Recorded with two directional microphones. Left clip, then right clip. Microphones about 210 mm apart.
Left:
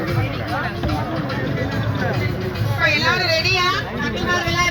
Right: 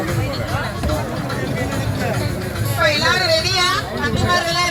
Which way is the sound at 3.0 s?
50° left (ahead or behind).